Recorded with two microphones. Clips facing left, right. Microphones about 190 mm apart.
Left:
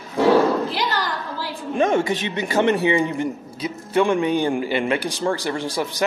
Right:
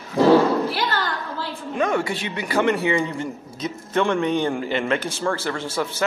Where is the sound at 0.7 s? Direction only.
20° left (ahead or behind).